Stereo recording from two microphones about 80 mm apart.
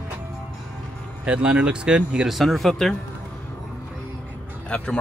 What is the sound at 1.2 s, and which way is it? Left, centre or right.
Speech, centre.